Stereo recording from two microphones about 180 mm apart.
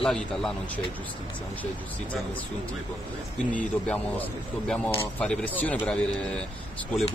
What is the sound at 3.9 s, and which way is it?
Speech, 5° left (ahead or behind).